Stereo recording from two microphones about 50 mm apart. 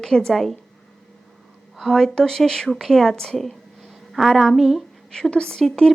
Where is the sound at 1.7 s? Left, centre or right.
Centre.